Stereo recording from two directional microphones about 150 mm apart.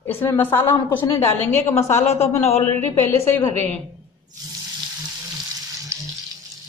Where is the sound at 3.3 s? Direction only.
15° left (ahead or behind).